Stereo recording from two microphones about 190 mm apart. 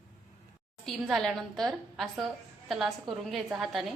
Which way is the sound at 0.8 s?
Centre (ahead or behind).